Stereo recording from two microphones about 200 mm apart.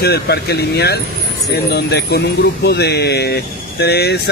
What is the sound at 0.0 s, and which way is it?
Speech, 55° left (ahead or behind).